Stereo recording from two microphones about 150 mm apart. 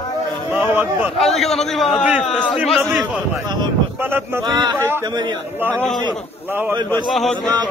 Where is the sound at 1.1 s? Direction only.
Centre (ahead or behind).